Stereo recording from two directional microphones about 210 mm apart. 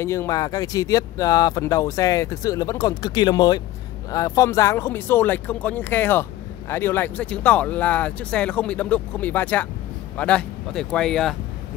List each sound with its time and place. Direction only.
0.0 s speech: 15° left (ahead or behind)